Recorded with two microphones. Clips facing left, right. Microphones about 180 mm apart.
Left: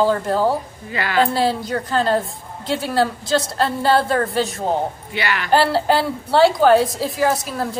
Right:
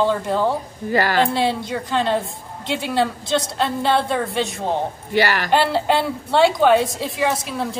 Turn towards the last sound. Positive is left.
turn(degrees=0)  # may be behind; listen again after turning